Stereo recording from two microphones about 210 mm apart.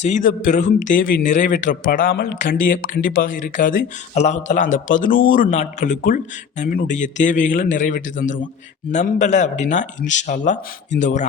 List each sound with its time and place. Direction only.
0.0 s speech: 35° left (ahead or behind)